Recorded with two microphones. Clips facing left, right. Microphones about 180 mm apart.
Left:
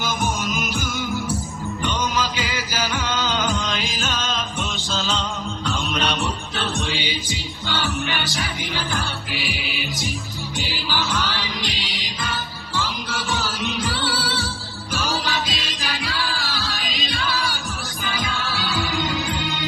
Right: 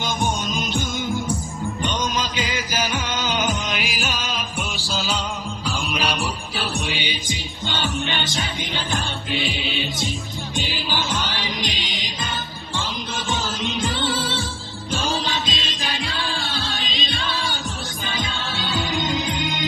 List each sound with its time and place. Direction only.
0.0 s music: 25° right (ahead or behind); by 6.1 s 5° right (ahead or behind)
6.6 s music: 15° right (ahead or behind)